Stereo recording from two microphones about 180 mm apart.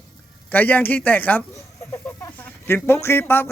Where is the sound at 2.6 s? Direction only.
15° left (ahead or behind).